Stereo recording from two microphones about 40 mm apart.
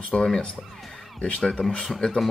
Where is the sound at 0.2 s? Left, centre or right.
Centre.